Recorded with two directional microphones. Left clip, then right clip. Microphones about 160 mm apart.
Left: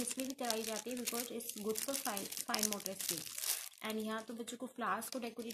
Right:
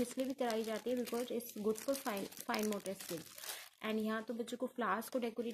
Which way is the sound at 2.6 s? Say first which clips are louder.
Even; 15° right (ahead or behind).